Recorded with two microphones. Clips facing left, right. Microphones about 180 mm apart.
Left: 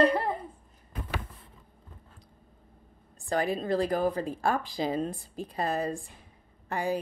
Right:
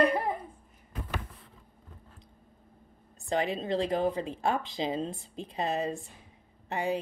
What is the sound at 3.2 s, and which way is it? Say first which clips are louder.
Speech: left 1 dB; 20° right (ahead or behind).